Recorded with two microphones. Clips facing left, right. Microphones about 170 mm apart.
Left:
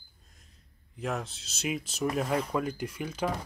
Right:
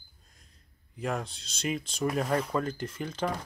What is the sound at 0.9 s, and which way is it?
Speech, centre (ahead or behind).